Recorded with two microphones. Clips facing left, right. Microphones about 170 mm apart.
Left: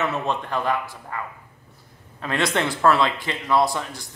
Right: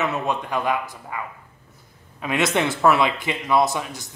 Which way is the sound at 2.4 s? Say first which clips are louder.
Right 2 dB; 20° right (ahead or behind).